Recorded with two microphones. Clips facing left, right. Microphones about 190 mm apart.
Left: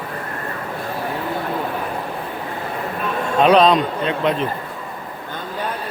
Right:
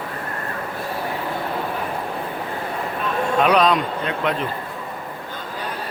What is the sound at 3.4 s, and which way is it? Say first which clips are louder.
A man's voice: left 5 dB; 25° left (ahead or behind).